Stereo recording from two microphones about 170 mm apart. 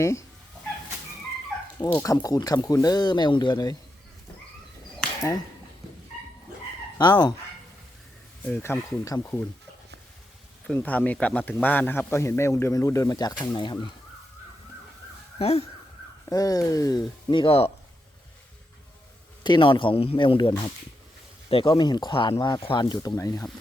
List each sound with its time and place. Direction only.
0.0 s a man's voice: 15° left (ahead or behind)
1.9 s a man's voice: 15° left (ahead or behind)
7.0 s speech: 25° left (ahead or behind)
8.4 s a man's voice: 10° left (ahead or behind)
10.7 s a man's voice: 10° left (ahead or behind); by 13.7 s 25° left (ahead or behind)
15.4 s speech: 35° left (ahead or behind)
16.3 s speech: 20° left (ahead or behind)
19.4 s speech: 25° left (ahead or behind)
21.5 s speech: 30° left (ahead or behind)